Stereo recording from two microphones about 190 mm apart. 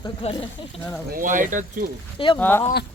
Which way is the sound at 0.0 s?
30° left (ahead or behind).